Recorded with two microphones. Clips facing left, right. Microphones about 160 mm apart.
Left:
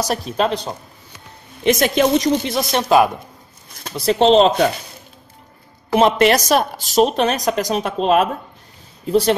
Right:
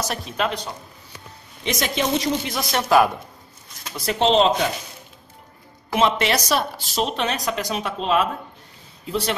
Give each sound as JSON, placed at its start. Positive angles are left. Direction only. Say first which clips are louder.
{"t": 0.0, "sound": "speech", "louder": "left 6 dB", "side_deg": 35}
{"t": 1.6, "sound": "a woman's voice", "louder": "left 9 dB", "side_deg": 55}
{"t": 2.5, "sound": "speech", "louder": "left 1 dB", "side_deg": 20}
{"t": 3.8, "sound": "speech", "louder": "left 6 dB", "side_deg": 30}
{"t": 5.9, "sound": "a woman's voice", "louder": "left 6 dB", "side_deg": 45}